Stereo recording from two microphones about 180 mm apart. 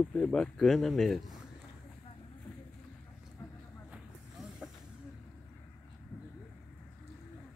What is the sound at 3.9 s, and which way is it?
Vehicle, centre (ahead or behind).